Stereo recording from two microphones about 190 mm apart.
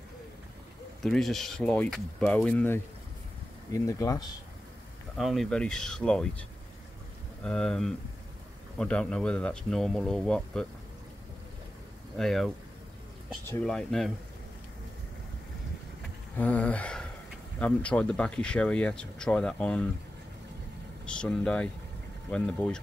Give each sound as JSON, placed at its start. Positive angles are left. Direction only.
{"t": 1.0, "sound": "speech", "side_deg": 0}
{"t": 5.1, "sound": "speech", "side_deg": 0}
{"t": 7.4, "sound": "speech", "side_deg": 5}
{"t": 12.2, "sound": "speech", "side_deg": 0}
{"t": 13.5, "sound": "speech", "side_deg": 5}
{"t": 16.3, "sound": "speech", "side_deg": 10}
{"t": 21.0, "sound": "speech", "side_deg": 5}